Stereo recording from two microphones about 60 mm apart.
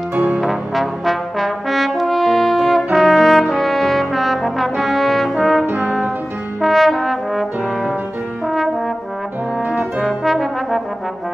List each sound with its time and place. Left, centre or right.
0.1 s brass instrument: right
0.4 s brass instrument: centre
8.5 s brass instrument: centre
10.0 s brass instrument: centre